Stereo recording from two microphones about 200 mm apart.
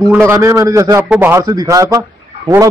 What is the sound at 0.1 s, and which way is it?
A man's voice, 10° right (ahead or behind).